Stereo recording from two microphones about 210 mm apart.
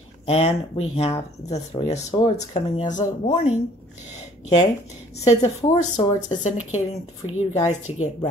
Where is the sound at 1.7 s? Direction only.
30° left (ahead or behind).